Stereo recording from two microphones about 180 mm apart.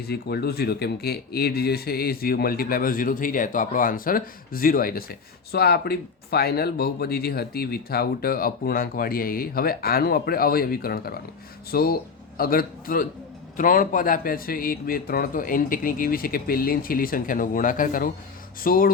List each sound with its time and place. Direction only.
0.0 s speech: 60° left (ahead or behind)